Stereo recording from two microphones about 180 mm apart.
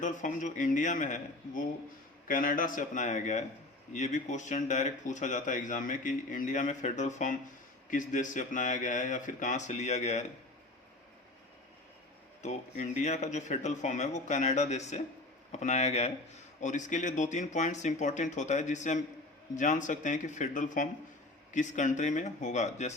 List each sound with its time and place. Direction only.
0.0 s speech: 45° left (ahead or behind)
12.4 s speech: 40° left (ahead or behind)